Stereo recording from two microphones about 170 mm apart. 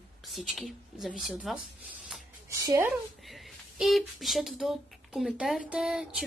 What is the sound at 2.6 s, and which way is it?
Speech, 20° right (ahead or behind).